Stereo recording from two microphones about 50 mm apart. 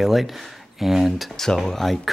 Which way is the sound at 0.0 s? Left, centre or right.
Centre.